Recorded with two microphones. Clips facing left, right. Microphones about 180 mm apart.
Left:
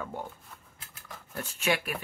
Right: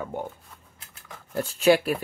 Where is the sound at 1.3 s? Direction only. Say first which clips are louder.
Right 10 dB; 35° right (ahead or behind).